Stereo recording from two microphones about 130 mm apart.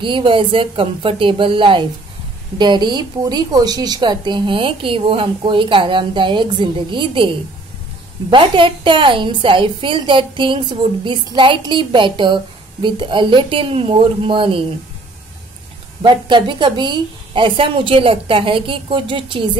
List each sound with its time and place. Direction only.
0.0 s a woman's voice: 40° right (ahead or behind)
8.3 s a woman's voice: 40° right (ahead or behind)
16.0 s a woman's voice: 35° right (ahead or behind)